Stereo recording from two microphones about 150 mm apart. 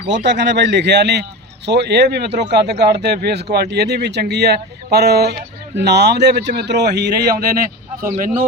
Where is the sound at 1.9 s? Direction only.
90° right.